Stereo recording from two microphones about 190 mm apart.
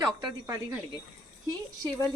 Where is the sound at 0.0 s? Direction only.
20° right (ahead or behind).